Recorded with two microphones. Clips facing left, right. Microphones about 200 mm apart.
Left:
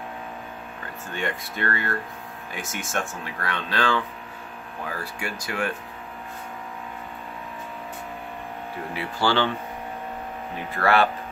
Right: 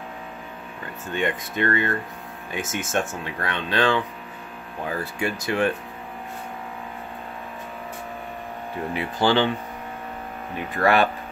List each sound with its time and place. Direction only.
1.0 s speech: 20° right (ahead or behind)
8.9 s speech: 20° right (ahead or behind)
10.8 s speech: 15° right (ahead or behind)